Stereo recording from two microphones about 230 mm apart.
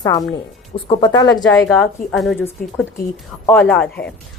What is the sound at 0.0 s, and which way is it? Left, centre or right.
Speech, centre.